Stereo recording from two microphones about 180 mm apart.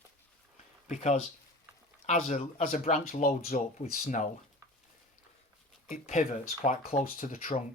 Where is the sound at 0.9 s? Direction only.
40° left (ahead or behind).